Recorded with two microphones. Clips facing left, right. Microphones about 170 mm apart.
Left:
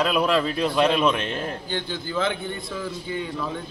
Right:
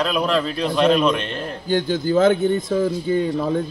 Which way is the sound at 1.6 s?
45° right (ahead or behind).